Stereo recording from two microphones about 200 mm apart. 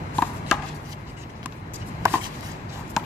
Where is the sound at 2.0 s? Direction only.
15° right (ahead or behind).